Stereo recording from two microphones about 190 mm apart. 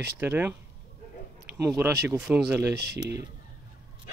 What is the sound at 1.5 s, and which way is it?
Speech, 10° right (ahead or behind).